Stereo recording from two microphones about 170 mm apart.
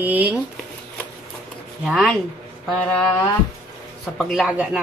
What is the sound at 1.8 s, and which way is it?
Speech, centre (ahead or behind).